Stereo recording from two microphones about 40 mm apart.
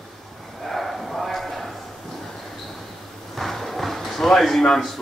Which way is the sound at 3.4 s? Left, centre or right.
Centre.